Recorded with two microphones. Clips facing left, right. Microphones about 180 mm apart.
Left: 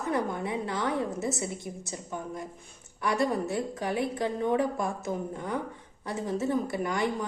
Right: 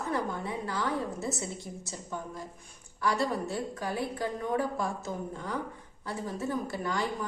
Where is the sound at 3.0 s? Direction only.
20° left (ahead or behind).